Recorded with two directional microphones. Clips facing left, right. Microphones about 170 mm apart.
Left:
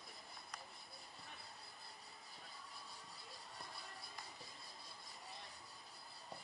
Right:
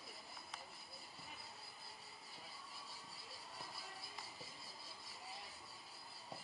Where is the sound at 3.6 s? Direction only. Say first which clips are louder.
Right 1 dB; centre (ahead or behind).